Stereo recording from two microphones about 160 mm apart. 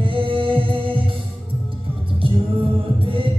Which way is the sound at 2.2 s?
35° right (ahead or behind).